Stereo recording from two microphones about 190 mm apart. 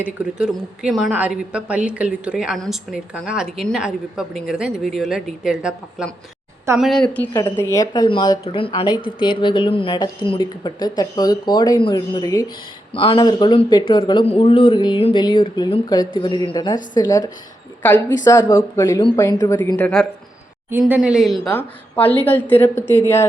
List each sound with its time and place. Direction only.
0.0 s a woman's voice: 5° right (ahead or behind)
7.3 s speech: 15° left (ahead or behind)
12.9 s a woman's voice: 30° left (ahead or behind); by 19.9 s 10° left (ahead or behind)
20.7 s a woman's voice: 10° right (ahead or behind)
21.5 s a woman's voice: 10° left (ahead or behind)